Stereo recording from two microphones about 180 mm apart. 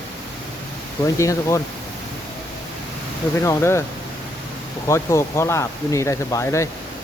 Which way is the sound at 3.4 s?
15° left (ahead or behind).